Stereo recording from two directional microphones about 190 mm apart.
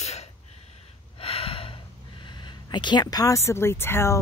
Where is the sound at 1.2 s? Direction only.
30° left (ahead or behind).